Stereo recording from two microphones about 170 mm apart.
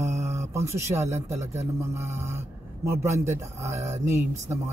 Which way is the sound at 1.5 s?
40° right (ahead or behind).